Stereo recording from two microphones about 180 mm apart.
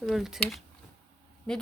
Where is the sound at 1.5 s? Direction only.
5° left (ahead or behind).